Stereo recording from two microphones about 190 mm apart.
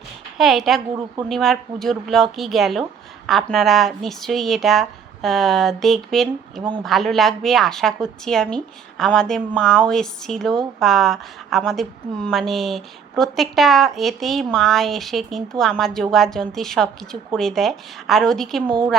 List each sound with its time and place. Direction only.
0.3 s a woman's voice: centre (ahead or behind)
6.6 s a woman's voice: 25° right (ahead or behind)
6.8 s a woman's voice: centre (ahead or behind)